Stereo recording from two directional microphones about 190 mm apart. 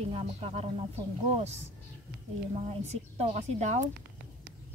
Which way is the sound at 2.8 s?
35° right (ahead or behind).